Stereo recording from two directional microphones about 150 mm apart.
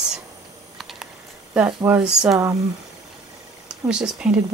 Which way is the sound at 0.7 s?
Centre (ahead or behind).